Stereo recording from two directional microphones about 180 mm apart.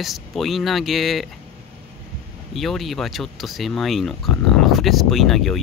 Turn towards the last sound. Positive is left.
turn(degrees=0)  # may be behind; listen again after turning